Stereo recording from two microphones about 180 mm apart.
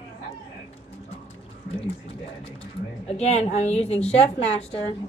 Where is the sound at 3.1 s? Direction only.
35° left (ahead or behind).